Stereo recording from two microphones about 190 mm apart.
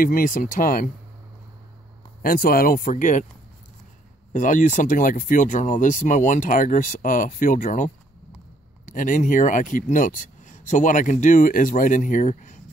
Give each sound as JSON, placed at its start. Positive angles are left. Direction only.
{"t": 0.0, "sound": "speech", "side_deg": 45}
{"t": 2.2, "sound": "speech", "side_deg": 50}
{"t": 4.3, "sound": "speech", "side_deg": 45}